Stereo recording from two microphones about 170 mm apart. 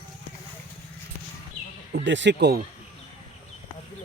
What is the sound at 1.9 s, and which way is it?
Speech, 90° right.